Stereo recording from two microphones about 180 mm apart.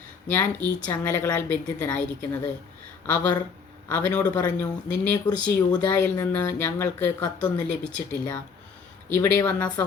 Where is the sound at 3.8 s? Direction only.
10° left (ahead or behind).